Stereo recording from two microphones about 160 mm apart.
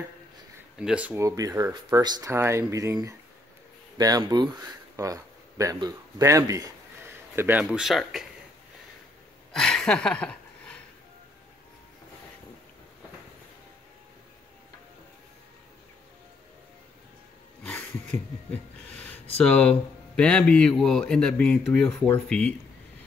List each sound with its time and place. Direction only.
0.7 s speech: 5° right (ahead or behind)
1.2 s speech: 20° right (ahead or behind); by 8.3 s centre (ahead or behind)
9.5 s a sound: 5° left (ahead or behind)
18.1 s speech: 10° left (ahead or behind)